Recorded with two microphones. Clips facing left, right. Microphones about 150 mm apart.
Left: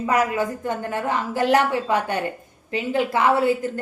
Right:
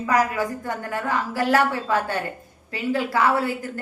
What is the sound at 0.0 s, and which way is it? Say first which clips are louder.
A woman's voice: left 1 dB; 20° left (ahead or behind).